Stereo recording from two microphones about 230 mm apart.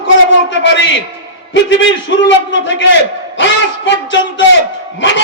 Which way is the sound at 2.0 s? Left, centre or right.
Left.